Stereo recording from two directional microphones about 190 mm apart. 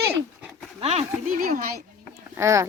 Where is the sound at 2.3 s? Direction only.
15° right (ahead or behind).